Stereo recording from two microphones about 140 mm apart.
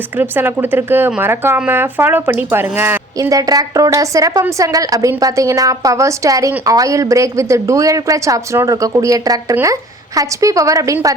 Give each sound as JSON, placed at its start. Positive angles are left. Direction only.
{"t": 0.2, "sound": "speech", "side_deg": -15}